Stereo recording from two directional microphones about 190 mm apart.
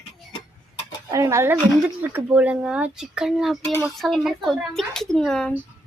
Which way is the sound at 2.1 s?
10° right (ahead or behind).